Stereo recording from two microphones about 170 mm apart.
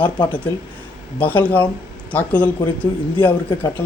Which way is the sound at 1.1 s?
10° left (ahead or behind).